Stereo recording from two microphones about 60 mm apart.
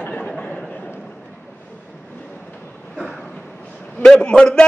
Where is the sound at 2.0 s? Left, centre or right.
Left.